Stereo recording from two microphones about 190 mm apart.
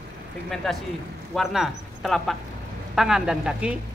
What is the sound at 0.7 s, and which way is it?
Speech, centre (ahead or behind).